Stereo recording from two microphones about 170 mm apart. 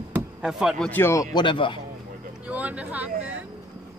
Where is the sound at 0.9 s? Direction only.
15° left (ahead or behind).